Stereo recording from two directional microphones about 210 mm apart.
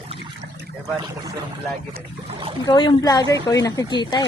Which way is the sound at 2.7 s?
20° left (ahead or behind).